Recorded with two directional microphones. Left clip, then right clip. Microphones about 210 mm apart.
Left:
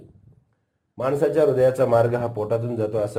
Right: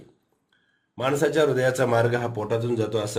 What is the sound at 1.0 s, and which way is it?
Speech, 10° right (ahead or behind).